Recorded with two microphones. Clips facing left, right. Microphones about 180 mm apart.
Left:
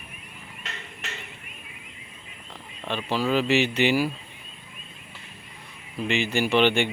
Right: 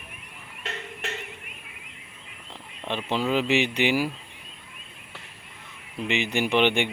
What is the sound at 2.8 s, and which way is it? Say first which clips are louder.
Speech: left 1 dB; 20° right (ahead or behind).